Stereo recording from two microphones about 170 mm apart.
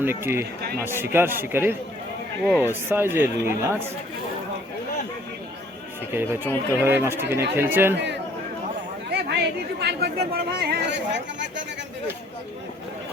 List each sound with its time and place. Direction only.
0.0 s speech: 15° right (ahead or behind)
6.1 s speech: 15° right (ahead or behind)
9.0 s chatter: 75° right (ahead or behind)